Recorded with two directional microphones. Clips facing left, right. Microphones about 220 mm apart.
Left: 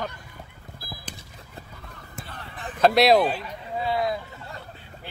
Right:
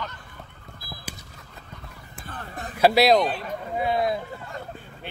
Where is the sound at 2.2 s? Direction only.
45° right (ahead or behind).